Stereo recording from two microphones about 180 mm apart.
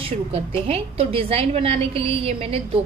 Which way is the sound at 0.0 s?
35° right (ahead or behind).